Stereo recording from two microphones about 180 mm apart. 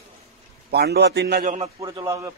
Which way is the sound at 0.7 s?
65° right (ahead or behind).